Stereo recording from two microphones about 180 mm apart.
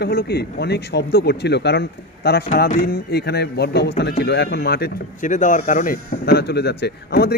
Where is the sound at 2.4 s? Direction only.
45° left (ahead or behind).